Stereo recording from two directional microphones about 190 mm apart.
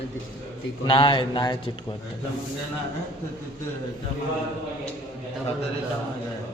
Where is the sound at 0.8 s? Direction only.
25° left (ahead or behind).